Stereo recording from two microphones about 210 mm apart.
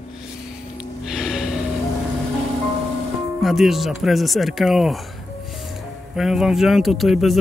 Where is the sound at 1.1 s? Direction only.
Centre (ahead or behind).